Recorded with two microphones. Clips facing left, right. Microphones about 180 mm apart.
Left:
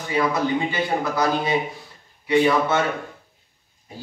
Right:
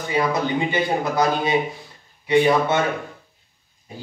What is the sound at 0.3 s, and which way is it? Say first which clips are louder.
A man's voice: right 1 dB; 20° right (ahead or behind).